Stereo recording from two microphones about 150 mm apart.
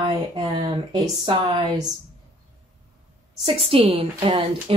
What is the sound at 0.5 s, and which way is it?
Speech, 30° right (ahead or behind).